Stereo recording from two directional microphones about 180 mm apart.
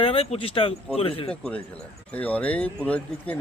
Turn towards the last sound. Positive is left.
turn(degrees=5)  # may be behind; listen again after turning